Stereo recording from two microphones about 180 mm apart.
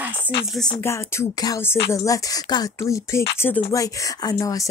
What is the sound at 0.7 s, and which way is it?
Music, 15° left (ahead or behind).